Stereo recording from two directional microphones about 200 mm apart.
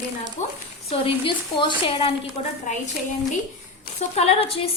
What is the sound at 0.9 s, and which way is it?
A woman's voice, 25° left (ahead or behind).